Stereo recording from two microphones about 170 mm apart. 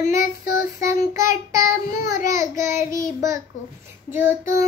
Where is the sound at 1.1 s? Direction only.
20° right (ahead or behind).